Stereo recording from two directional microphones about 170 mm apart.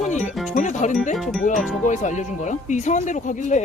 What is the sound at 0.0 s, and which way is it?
Music, 45° left (ahead or behind).